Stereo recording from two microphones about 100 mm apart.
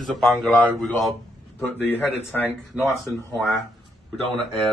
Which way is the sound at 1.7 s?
20° left (ahead or behind).